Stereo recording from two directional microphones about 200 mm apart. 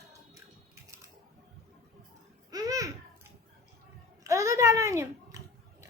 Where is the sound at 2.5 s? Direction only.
20° right (ahead or behind).